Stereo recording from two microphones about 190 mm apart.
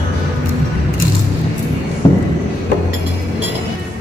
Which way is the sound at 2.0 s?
25° left (ahead or behind).